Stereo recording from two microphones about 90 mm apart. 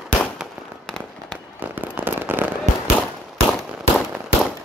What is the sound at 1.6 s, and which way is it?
Firecracker, 20° right (ahead or behind).